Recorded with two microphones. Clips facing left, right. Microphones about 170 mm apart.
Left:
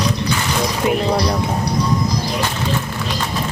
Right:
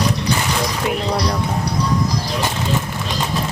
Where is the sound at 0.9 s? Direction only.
Centre (ahead or behind).